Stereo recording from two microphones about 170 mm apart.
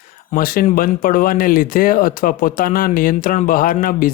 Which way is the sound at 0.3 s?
55° left (ahead or behind).